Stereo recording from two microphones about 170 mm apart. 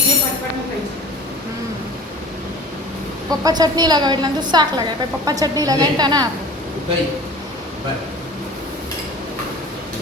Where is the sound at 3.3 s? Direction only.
20° right (ahead or behind).